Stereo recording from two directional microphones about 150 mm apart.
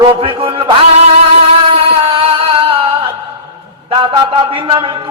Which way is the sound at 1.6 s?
40° right (ahead or behind).